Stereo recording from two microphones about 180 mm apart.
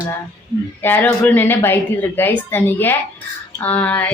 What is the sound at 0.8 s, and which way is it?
Speech, 10° left (ahead or behind).